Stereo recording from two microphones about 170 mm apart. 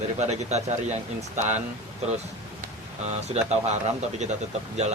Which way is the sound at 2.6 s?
40° right (ahead or behind).